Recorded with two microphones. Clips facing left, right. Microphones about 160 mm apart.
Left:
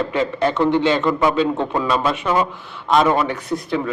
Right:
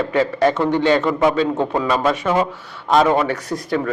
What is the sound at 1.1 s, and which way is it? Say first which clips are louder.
Speech: right 1 dB; 10° right (ahead or behind).